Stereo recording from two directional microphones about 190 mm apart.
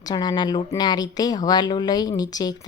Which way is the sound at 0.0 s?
20° left (ahead or behind).